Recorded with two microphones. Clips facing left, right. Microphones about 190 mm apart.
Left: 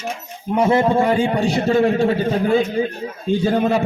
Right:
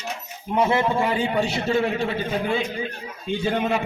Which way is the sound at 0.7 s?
40° left (ahead or behind).